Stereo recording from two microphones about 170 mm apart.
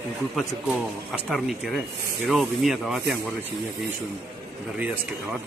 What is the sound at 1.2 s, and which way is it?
Speech, centre (ahead or behind).